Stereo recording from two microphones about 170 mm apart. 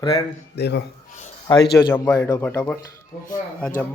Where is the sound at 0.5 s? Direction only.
80° left.